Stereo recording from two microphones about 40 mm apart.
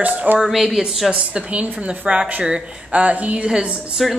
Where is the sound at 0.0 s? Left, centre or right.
Right.